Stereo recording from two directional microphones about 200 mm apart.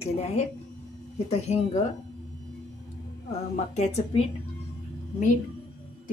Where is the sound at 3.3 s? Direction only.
35° left (ahead or behind).